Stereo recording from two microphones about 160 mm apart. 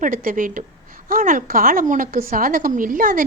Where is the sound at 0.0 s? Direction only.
60° right (ahead or behind).